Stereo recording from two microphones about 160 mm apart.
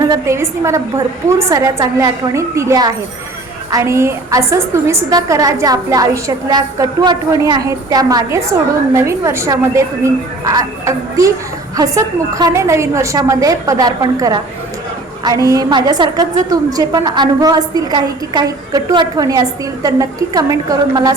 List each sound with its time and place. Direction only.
0.1 s a woman's voice: 15° right (ahead or behind)